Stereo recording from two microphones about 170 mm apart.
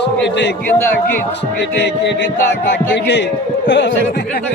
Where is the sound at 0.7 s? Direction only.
10° left (ahead or behind).